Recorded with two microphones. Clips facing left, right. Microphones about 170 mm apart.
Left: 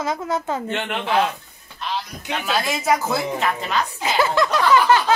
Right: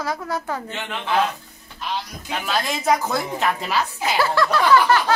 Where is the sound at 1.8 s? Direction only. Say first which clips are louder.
Even; centre (ahead or behind).